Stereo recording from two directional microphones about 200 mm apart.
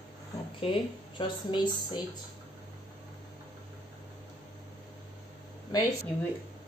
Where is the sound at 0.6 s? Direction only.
25° left (ahead or behind).